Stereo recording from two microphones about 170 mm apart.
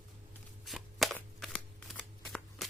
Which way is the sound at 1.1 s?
5° left (ahead or behind).